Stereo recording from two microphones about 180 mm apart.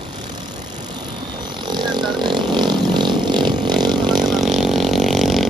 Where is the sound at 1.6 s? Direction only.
25° right (ahead or behind).